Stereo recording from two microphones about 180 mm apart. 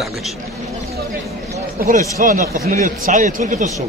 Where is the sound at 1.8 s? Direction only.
45° right (ahead or behind).